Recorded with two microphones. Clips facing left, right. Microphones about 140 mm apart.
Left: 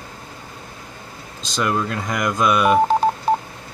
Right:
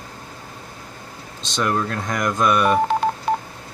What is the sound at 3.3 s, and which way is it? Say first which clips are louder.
Telephone dialing: left 3 dB; 35° left (ahead or behind).